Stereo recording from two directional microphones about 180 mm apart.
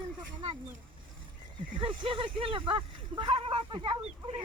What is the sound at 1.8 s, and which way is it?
Speech, 30° right (ahead or behind).